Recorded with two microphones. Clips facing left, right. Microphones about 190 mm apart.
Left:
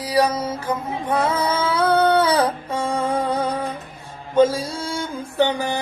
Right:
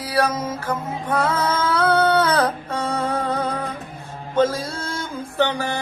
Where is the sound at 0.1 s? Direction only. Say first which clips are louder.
Left 2 dB; 15° left (ahead or behind).